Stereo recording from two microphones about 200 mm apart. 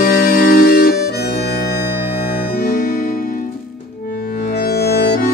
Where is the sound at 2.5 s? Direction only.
45° left (ahead or behind).